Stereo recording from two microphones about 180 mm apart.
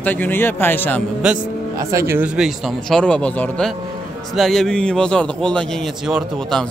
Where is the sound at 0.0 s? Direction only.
10° left (ahead or behind).